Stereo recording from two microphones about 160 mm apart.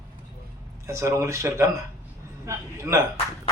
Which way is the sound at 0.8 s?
20° right (ahead or behind).